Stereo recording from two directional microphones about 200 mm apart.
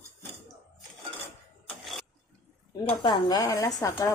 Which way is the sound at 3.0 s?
20° left (ahead or behind).